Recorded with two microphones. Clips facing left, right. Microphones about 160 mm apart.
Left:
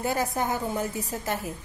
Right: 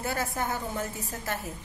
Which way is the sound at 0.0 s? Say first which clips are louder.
Left 4 dB; 15° left (ahead or behind).